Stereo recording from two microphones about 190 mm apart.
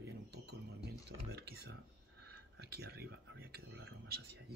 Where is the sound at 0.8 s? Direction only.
60° right (ahead or behind).